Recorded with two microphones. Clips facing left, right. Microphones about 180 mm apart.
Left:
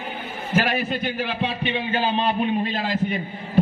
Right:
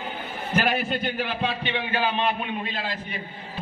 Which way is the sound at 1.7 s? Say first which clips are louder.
Left 3 dB; 30° left (ahead or behind).